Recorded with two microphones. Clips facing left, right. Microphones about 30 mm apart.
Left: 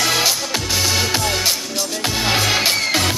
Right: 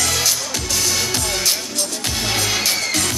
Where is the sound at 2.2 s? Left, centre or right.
Left.